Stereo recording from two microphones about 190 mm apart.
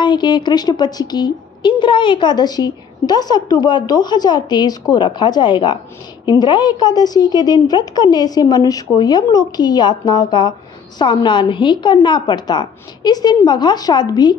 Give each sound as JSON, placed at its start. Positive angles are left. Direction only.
{"t": 0.0, "sound": "a woman's voice", "side_deg": 25}